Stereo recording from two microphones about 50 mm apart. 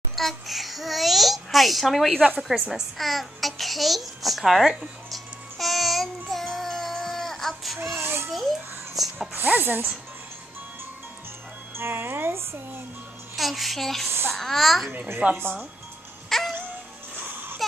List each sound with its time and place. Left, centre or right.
0.1 s babbling: centre
7.8 s a sound: right
8.3 s a child's voice: centre
9.6 s speech: right
11.7 s speech: right
13.4 s a child's voice: centre
14.0 s babbling: right
14.3 s a child's voice: centre
15.2 s speech: right
16.3 s music: centre
17.2 s music: right